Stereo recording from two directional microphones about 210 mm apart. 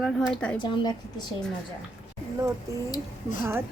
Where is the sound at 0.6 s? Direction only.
20° left (ahead or behind).